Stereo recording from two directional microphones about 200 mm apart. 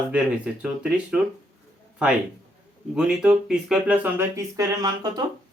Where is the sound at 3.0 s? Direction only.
5° right (ahead or behind).